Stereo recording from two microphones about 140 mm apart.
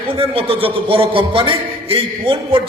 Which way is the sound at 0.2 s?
40° right (ahead or behind).